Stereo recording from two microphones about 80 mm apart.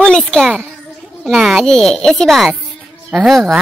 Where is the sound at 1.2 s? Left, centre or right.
Centre.